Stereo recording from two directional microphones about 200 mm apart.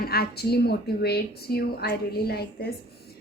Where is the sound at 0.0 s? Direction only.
50° left (ahead or behind).